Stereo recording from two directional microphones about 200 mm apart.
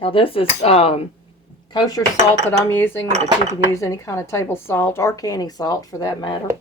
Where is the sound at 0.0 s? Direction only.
25° left (ahead or behind).